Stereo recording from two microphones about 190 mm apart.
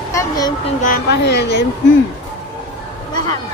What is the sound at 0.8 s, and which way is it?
Speech, 55° left (ahead or behind).